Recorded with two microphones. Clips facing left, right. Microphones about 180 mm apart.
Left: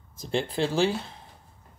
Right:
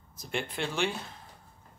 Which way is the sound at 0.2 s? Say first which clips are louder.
Left 7 dB; 30° left (ahead or behind).